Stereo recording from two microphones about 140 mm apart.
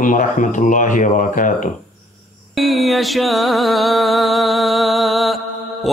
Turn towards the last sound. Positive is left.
turn(degrees=0)  # may be behind; listen again after turning